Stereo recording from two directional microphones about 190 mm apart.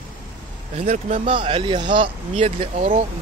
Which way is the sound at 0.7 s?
35° right (ahead or behind).